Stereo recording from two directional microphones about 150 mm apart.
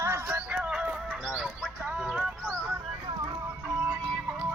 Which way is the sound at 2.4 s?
15° right (ahead or behind).